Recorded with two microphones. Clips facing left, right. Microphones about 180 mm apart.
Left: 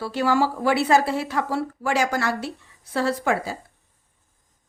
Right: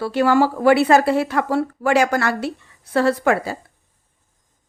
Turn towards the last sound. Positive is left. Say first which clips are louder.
# right 5 dB
turn(degrees=-60)  # may be behind; listen again after turning